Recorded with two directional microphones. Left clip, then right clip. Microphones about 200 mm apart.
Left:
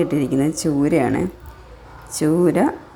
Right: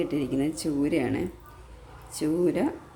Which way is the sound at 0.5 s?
Centre (ahead or behind).